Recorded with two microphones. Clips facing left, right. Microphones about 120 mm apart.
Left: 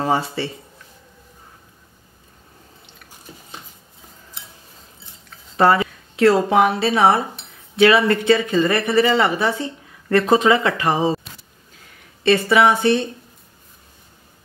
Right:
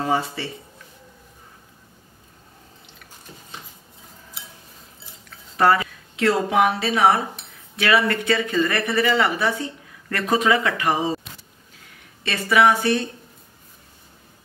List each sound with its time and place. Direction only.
0.0 s speech: 30° left (ahead or behind)
5.6 s speech: 30° left (ahead or behind)
12.2 s speech: 30° left (ahead or behind)